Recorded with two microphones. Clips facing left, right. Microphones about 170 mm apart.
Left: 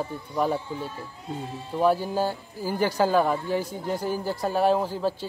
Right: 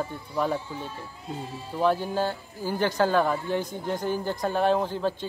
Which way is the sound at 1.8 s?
10° left (ahead or behind).